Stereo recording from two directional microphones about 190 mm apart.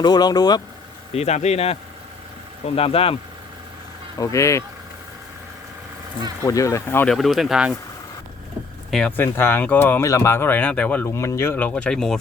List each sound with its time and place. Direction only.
0.0 s speech: 20° left (ahead or behind)
1.1 s a man's voice: 35° left (ahead or behind)
4.2 s speech: 15° left (ahead or behind)
6.4 s speech: 15° left (ahead or behind); by 7.8 s centre (ahead or behind)
8.9 s speech: 5° left (ahead or behind)